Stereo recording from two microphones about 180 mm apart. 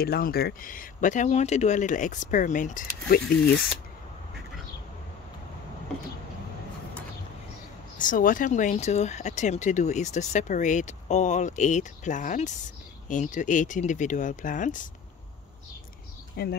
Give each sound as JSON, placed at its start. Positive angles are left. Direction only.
{"t": 0.0, "sound": "speech", "side_deg": 55}
{"t": 8.0, "sound": "speech", "side_deg": 50}
{"t": 16.4, "sound": "speech", "side_deg": 60}